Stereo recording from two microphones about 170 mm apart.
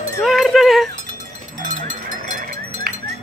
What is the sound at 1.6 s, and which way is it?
Sheep, 50° right (ahead or behind).